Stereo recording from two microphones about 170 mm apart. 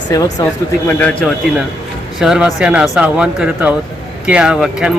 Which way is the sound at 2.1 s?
5° right (ahead or behind).